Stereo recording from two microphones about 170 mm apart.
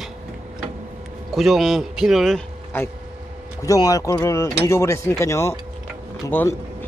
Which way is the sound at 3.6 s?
20° left (ahead or behind).